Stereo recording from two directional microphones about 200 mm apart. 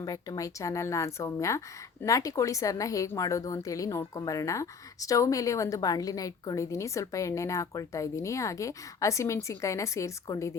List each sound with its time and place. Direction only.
0.0 s speech: 15° left (ahead or behind)